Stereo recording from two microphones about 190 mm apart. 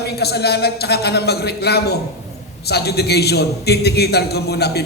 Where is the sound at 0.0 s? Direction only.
60° left (ahead or behind).